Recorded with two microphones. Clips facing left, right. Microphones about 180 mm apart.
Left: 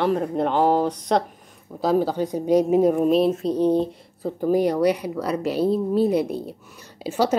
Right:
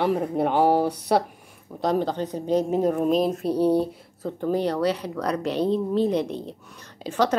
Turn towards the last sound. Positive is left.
turn(degrees=10)  # may be behind; listen again after turning